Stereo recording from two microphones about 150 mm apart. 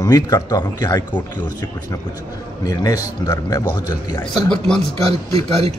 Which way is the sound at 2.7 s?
25° left (ahead or behind).